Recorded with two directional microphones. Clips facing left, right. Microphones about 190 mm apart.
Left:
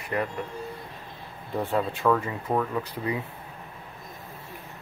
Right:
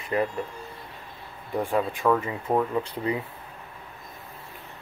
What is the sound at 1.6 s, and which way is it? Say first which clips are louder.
Speech: right 1 dB; 10° right (ahead or behind).